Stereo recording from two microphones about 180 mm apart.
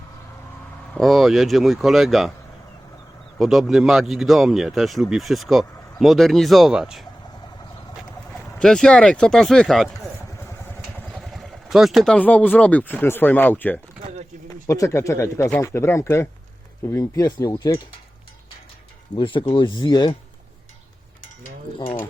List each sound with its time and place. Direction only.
0.9 s speech: centre (ahead or behind)
3.3 s speech: centre (ahead or behind)
8.5 s speech: 5° left (ahead or behind)
11.1 s speech: centre (ahead or behind); by 17.7 s 15° left (ahead or behind)
19.1 s speech: 30° left (ahead or behind)